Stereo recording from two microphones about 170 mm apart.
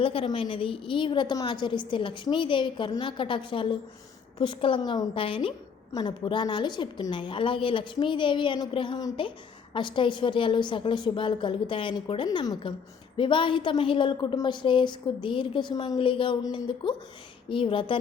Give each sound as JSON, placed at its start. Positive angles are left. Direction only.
{"t": 0.0, "sound": "a woman's voice", "side_deg": 30}